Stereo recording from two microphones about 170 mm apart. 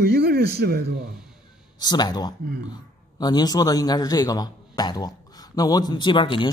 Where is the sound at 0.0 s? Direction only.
65° right (ahead or behind).